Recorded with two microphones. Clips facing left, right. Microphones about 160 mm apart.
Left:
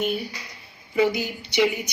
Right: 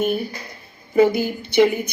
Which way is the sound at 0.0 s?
50° right (ahead or behind).